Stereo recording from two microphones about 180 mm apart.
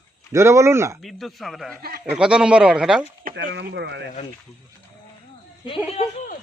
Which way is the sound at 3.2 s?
50° right (ahead or behind).